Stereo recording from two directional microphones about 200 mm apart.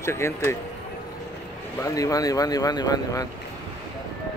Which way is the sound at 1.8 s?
15° left (ahead or behind).